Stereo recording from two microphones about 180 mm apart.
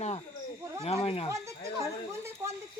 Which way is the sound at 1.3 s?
15° right (ahead or behind).